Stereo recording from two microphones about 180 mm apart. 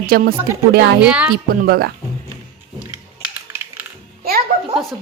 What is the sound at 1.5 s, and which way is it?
Speech, 60° right (ahead or behind).